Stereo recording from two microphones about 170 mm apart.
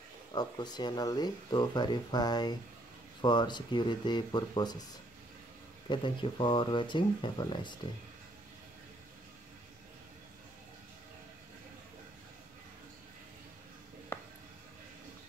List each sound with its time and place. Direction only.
0.3 s speech: 25° left (ahead or behind)
5.9 s speech: 30° left (ahead or behind)